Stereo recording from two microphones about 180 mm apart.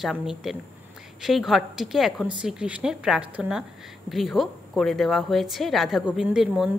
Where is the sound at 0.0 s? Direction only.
Centre (ahead or behind).